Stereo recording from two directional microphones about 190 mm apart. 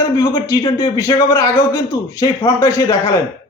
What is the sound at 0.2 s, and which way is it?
A man's voice, 15° left (ahead or behind).